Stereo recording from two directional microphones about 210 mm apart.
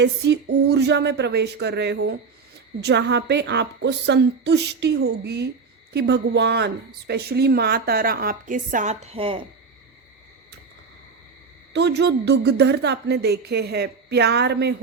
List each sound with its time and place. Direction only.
0.0 s a woman's voice: 55° right (ahead or behind); by 9.4 s 25° right (ahead or behind)
11.7 s a woman's voice: 55° right (ahead or behind)